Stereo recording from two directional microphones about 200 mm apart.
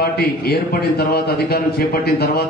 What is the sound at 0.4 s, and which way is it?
Speech, 50° left (ahead or behind).